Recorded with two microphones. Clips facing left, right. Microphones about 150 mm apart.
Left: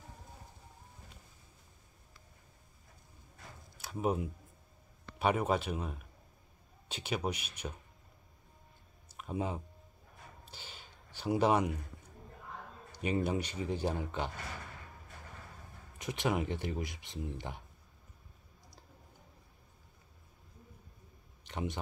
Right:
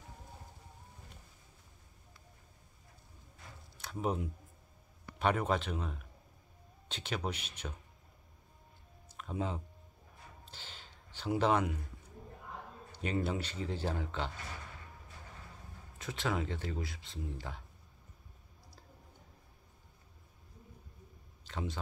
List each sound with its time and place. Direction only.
3.7 s speech: 10° left (ahead or behind)
9.1 s a sound: 10° left (ahead or behind)
12.9 s speech: 15° left (ahead or behind)
16.0 s speech: 15° left (ahead or behind)
21.5 s speech: 20° left (ahead or behind)